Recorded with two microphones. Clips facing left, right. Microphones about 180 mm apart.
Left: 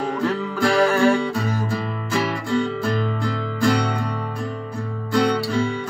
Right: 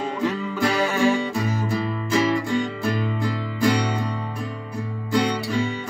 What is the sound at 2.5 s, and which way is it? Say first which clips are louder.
Music: left 2 dB; 15° right (ahead or behind).